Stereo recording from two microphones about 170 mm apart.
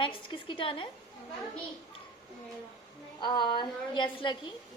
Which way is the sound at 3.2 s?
25° left (ahead or behind).